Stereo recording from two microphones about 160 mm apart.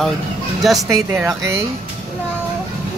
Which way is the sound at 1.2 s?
15° right (ahead or behind).